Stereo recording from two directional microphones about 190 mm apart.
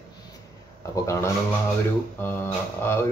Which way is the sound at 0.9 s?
15° left (ahead or behind).